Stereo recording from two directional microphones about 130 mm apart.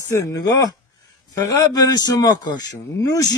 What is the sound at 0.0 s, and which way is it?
Speech, 25° left (ahead or behind).